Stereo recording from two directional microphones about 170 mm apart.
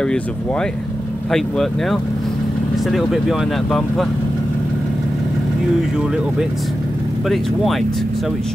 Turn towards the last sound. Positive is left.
turn(degrees=0)  # may be behind; listen again after turning